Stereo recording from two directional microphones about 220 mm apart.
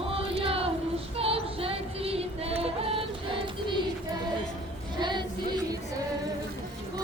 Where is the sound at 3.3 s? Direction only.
25° right (ahead or behind).